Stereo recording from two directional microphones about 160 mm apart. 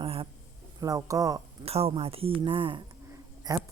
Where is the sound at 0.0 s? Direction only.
35° right (ahead or behind).